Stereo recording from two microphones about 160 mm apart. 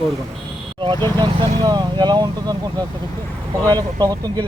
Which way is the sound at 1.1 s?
30° right (ahead or behind).